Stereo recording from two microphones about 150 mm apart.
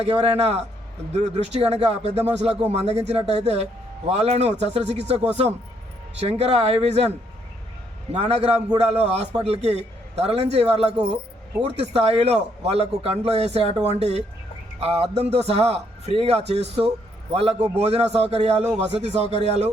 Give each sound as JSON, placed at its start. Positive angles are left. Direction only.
{"t": 0.0, "sound": "speech", "side_deg": -45}
{"t": 8.1, "sound": "speech", "side_deg": -45}
{"t": 18.6, "sound": "speech", "side_deg": -5}
{"t": 19.0, "sound": "speech", "side_deg": -45}